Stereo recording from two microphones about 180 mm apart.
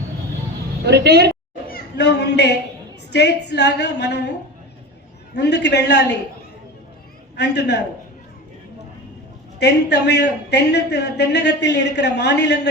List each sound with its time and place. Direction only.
0.9 s a woman's voice: 65° right (ahead or behind)
1.7 s a man's voice: 70° left (ahead or behind)
7.3 s a man's voice: 70° left (ahead or behind)
9.6 s a man's voice: 70° left (ahead or behind)